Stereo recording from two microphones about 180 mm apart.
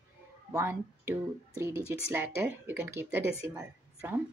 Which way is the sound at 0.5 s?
15° right (ahead or behind).